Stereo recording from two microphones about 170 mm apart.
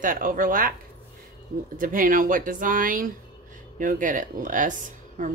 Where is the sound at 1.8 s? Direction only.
55° right (ahead or behind).